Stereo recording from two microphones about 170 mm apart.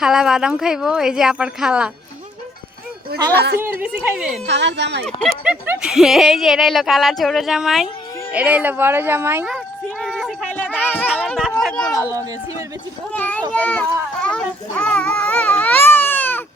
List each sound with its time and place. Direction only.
0.0 s speech: centre (ahead or behind)
3.3 s a woman's voice: 70° right (ahead or behind)
3.6 s speech: 10° right (ahead or behind)
4.4 s speech: 90° right
5.0 s speech: centre (ahead or behind)
10.0 s a sound: centre (ahead or behind)
13.1 s a child's voice: 10° left (ahead or behind)